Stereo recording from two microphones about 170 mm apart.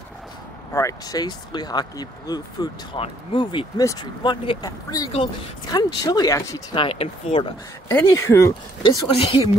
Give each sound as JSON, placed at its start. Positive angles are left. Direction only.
{"t": 0.7, "sound": "speech", "side_deg": 20}
{"t": 7.9, "sound": "speech", "side_deg": 15}
{"t": 9.2, "sound": "speech", "side_deg": 35}